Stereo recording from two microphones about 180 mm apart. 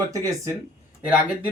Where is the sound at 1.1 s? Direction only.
10° right (ahead or behind).